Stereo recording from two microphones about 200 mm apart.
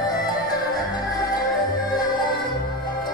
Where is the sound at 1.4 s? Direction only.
20° left (ahead or behind).